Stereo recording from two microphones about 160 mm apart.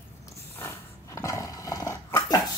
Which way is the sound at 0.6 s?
15° left (ahead or behind).